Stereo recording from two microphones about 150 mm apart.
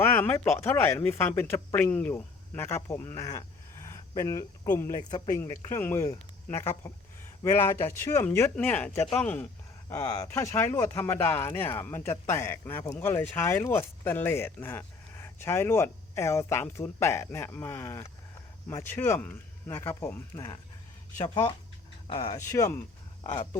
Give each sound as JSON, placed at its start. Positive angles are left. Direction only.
{"t": 0.0, "sound": "speech", "side_deg": 15}
{"t": 22.2, "sound": "speech", "side_deg": 20}